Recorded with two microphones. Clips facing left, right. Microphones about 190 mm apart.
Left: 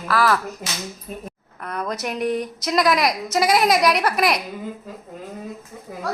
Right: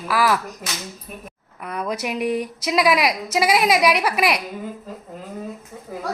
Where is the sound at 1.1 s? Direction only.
25° left (ahead or behind).